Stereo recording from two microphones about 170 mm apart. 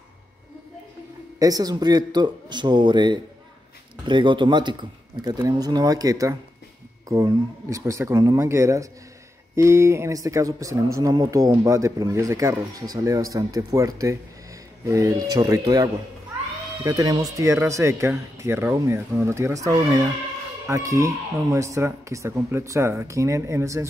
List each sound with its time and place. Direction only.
1.4 s speech: 20° right (ahead or behind)